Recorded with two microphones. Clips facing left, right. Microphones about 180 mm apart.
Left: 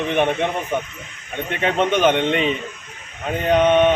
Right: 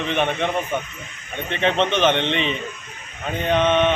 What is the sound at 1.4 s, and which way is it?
Speech, 10° left (ahead or behind).